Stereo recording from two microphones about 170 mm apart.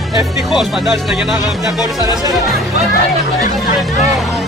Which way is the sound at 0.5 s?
Centre (ahead or behind).